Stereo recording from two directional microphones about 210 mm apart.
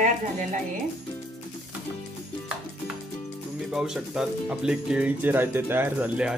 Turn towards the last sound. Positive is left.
turn(degrees=-5)  # may be behind; listen again after turning